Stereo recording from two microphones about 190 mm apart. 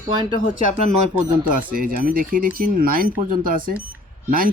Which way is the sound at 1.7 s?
50° right (ahead or behind).